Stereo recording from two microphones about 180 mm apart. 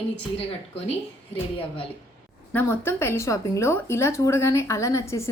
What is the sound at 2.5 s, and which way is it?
A woman's voice, 10° left (ahead or behind).